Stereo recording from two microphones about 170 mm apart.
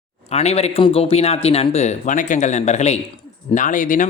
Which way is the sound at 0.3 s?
40° left (ahead or behind).